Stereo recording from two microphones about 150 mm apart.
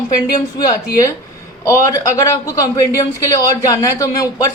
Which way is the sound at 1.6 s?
20° left (ahead or behind).